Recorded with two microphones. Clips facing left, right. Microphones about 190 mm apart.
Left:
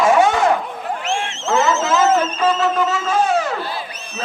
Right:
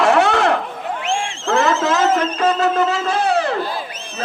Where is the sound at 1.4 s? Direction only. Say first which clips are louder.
Right 1 dB; 55° right (ahead or behind).